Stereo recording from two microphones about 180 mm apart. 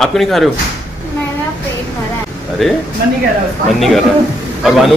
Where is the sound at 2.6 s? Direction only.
Centre (ahead or behind).